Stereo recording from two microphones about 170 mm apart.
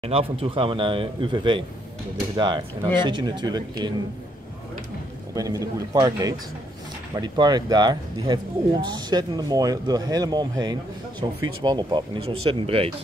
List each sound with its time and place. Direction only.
0.0 s speech: 35° right (ahead or behind)
5.3 s speech: 20° right (ahead or behind)